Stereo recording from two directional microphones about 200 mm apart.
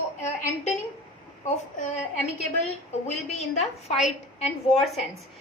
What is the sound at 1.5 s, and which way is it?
Speech, 35° left (ahead or behind).